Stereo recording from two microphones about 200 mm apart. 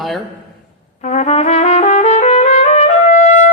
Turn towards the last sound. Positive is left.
turn(degrees=35)  # may be behind; listen again after turning